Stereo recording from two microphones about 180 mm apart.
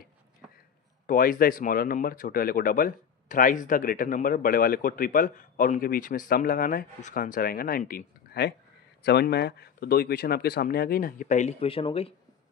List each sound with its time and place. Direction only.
1.0 s speech: 50° left (ahead or behind); by 12.1 s 30° left (ahead or behind)